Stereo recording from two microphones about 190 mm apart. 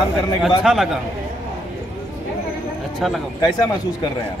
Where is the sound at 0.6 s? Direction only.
Centre (ahead or behind).